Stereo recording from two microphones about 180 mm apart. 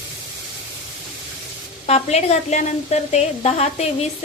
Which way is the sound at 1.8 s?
35° left (ahead or behind).